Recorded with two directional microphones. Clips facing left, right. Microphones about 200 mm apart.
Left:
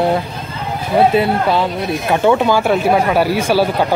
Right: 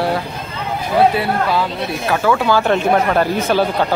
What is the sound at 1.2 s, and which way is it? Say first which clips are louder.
A man's voice: left 3 dB; 25° left (ahead or behind).